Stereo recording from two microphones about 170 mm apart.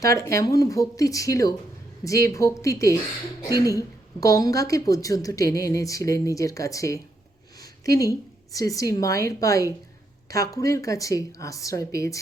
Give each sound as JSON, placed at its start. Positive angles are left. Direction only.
{"t": 0.0, "sound": "a woman's voice", "side_deg": 20}
{"t": 7.6, "sound": "a sound", "side_deg": 20}
{"t": 8.5, "sound": "a woman's voice", "side_deg": 20}